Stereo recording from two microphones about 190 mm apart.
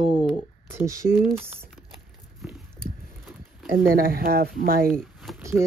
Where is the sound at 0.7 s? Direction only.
15° right (ahead or behind).